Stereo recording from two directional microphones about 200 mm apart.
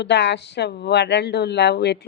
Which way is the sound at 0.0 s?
60° left (ahead or behind).